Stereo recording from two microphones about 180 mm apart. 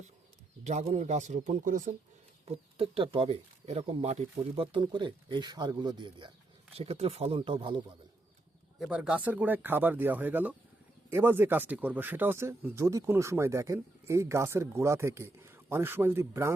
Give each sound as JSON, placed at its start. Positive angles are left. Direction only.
{"t": 0.6, "sound": "speech", "side_deg": -40}
{"t": 2.7, "sound": "speech", "side_deg": -30}
{"t": 8.8, "sound": "speech", "side_deg": -5}